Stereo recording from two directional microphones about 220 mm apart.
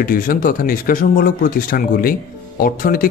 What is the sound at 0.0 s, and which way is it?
Speech, 40° left (ahead or behind).